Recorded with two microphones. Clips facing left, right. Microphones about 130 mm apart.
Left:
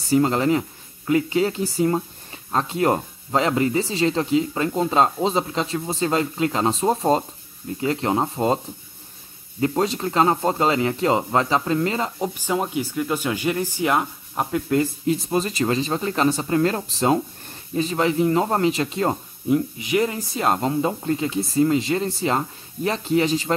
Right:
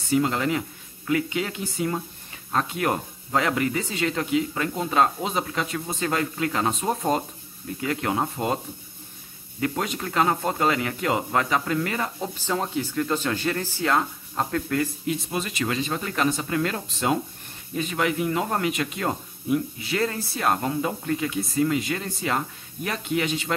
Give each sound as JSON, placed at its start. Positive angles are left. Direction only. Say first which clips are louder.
{"t": 0.1, "sound": "speech", "louder": "left 4 dB", "side_deg": 35}
{"t": 9.6, "sound": "speech", "louder": "left 6 dB", "side_deg": 30}
{"t": 15.0, "sound": "speech", "louder": "left 6 dB", "side_deg": 35}
{"t": 19.8, "sound": "speech", "louder": "left 4 dB", "side_deg": 15}